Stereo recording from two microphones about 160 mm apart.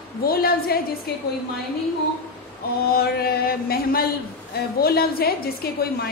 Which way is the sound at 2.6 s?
70° left (ahead or behind).